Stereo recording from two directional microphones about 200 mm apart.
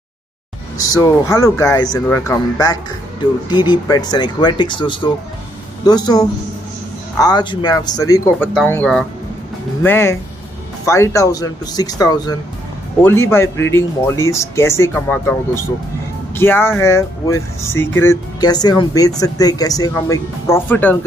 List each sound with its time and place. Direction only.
0.7 s speech: 15° left (ahead or behind)
8.5 s speech: 5° left (ahead or behind)